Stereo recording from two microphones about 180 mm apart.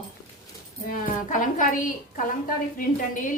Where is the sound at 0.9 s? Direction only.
45° left (ahead or behind).